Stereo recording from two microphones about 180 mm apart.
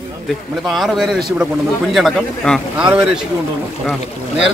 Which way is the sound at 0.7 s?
Centre (ahead or behind).